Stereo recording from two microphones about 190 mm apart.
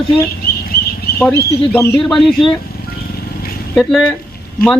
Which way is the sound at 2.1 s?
Centre (ahead or behind).